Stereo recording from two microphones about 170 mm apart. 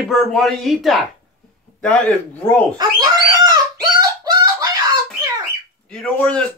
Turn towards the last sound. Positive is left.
turn(degrees=5)  # may be behind; listen again after turning